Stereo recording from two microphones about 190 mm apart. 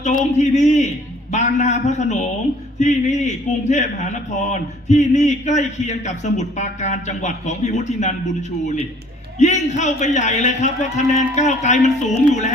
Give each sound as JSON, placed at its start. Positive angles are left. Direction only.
{"t": 0.3, "sound": "a man's voice", "side_deg": 40}